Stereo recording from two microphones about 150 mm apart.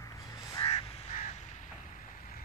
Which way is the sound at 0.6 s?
45° left (ahead or behind).